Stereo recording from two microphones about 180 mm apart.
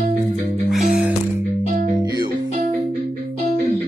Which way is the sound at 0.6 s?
5° right (ahead or behind).